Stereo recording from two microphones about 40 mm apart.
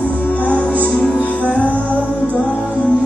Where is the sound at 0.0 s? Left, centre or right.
Left.